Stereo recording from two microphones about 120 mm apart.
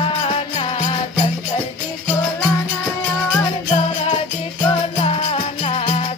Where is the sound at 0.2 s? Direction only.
55° left (ahead or behind).